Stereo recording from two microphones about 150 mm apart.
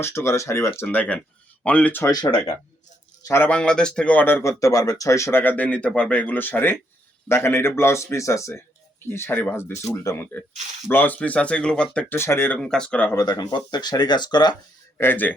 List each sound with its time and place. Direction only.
0.0 s speech: 15° left (ahead or behind)
3.2 s speech: 15° left (ahead or behind)
13.1 s speech: 25° left (ahead or behind)
14.9 s speech: 15° left (ahead or behind)